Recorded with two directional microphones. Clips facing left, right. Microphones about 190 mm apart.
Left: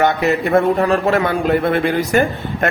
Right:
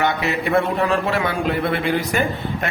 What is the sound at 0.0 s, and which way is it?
A man's voice, 45° left (ahead or behind).